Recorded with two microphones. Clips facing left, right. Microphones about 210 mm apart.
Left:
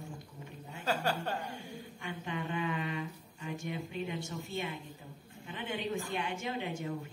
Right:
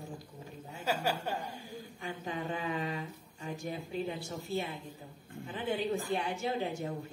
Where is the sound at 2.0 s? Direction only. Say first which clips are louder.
Right 1 dB; 35° right (ahead or behind).